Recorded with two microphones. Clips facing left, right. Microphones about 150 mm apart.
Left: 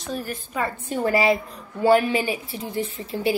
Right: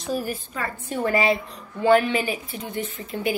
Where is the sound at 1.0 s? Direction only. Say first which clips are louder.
Left 1 dB; 35° left (ahead or behind).